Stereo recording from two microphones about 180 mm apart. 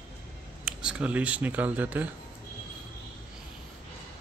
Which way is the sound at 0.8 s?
5° right (ahead or behind).